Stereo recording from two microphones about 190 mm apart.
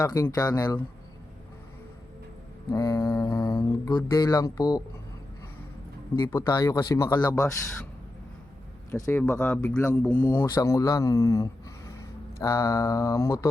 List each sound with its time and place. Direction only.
0.0 s mantra: 20° left (ahead or behind)
2.6 s mantra: 20° left (ahead or behind)
6.1 s mantra: 20° left (ahead or behind)
8.9 s speech: 15° left (ahead or behind)
10.4 s speech: 20° left (ahead or behind)